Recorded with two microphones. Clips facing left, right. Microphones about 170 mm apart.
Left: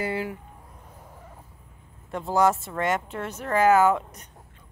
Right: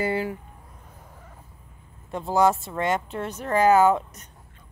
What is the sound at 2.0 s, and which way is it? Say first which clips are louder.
Speech: right 1 dB; 20° right (ahead or behind).